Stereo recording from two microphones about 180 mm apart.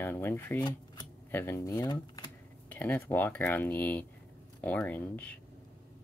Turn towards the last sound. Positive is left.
turn(degrees=10)  # may be behind; listen again after turning